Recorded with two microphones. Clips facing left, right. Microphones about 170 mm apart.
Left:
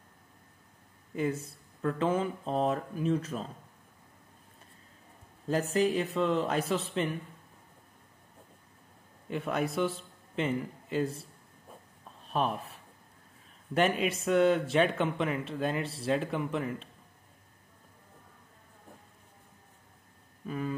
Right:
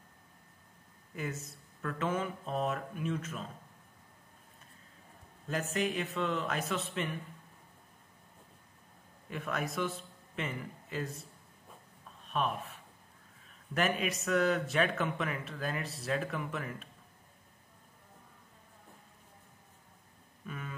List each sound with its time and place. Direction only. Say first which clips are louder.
1.1 s speech: left 8 dB; 30° left (ahead or behind)
5.5 s speech: left 6 dB; 30° left (ahead or behind)
9.3 s a man's voice: left 5 dB; 30° left (ahead or behind)
12.3 s speech: left 3 dB; 35° left (ahead or behind)
20.4 s speech: left 9 dB; 30° left (ahead or behind)